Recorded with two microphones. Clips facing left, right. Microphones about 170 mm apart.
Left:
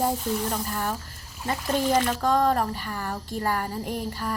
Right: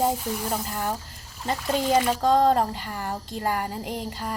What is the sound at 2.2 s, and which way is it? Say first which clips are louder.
Speech: right 3 dB; 20° right (ahead or behind).